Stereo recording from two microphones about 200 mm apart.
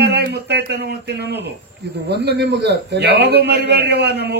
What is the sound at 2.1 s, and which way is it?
A man's voice, 55° right (ahead or behind).